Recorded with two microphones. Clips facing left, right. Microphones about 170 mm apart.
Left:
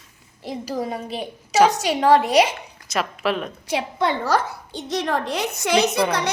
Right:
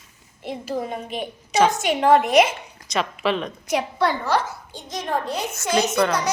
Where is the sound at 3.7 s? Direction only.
25° left (ahead or behind).